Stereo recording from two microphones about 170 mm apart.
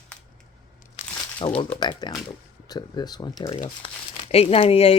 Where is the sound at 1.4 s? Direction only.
30° left (ahead or behind).